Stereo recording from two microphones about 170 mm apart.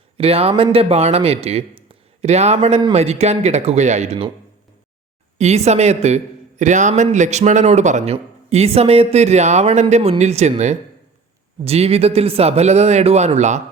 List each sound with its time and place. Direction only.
0.2 s speech: 35° right (ahead or behind)
5.4 s speech: 40° right (ahead or behind)
11.6 s speech: 35° right (ahead or behind)